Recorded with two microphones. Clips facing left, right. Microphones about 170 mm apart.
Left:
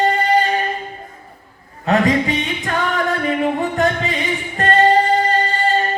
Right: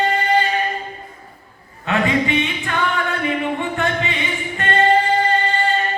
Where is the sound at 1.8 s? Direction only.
40° left (ahead or behind).